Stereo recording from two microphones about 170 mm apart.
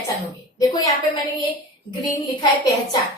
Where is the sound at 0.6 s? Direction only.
20° left (ahead or behind).